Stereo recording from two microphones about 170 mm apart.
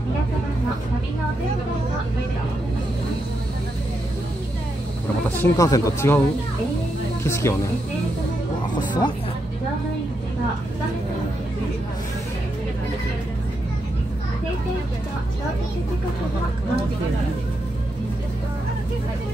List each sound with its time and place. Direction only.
5.3 s speech: 15° left (ahead or behind)
7.2 s speech: 15° left (ahead or behind)
8.7 s speech: 25° left (ahead or behind)